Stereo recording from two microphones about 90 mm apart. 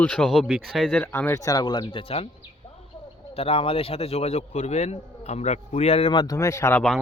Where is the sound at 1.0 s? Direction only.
25° left (ahead or behind); by 2.2 s 80° left.